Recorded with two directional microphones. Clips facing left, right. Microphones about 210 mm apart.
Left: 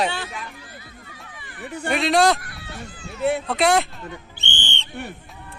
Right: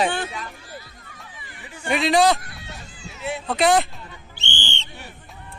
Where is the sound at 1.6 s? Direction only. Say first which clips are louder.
Left 7 dB; 65° left (ahead or behind).